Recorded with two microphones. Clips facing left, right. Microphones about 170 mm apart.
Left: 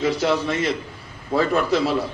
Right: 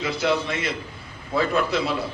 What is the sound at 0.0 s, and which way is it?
A man's voice, 40° left (ahead or behind).